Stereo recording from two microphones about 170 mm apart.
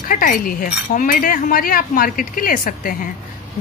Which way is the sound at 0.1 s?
50° left (ahead or behind).